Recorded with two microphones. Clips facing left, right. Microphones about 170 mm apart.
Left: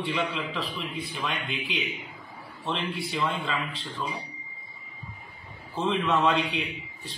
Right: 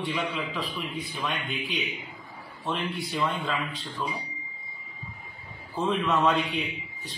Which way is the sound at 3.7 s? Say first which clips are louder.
Even; 30° left (ahead or behind).